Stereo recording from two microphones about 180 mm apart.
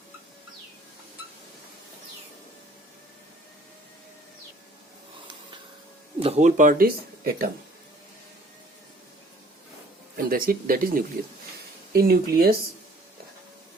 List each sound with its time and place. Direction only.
6.2 s speech: 40° right (ahead or behind); by 7.5 s 55° right (ahead or behind)
10.2 s speech: 55° right (ahead or behind)